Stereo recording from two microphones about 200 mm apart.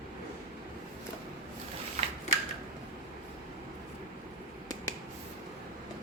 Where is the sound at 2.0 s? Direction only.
35° right (ahead or behind).